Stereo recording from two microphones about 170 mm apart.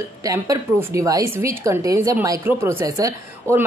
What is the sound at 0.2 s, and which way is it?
A woman's voice, 20° right (ahead or behind).